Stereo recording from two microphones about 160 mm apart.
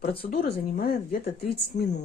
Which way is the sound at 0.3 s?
70° left (ahead or behind).